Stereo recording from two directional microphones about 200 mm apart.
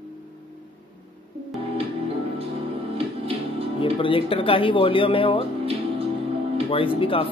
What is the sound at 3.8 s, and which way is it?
Speech, 25° left (ahead or behind).